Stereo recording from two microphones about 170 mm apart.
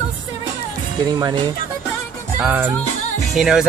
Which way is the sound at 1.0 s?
25° right (ahead or behind).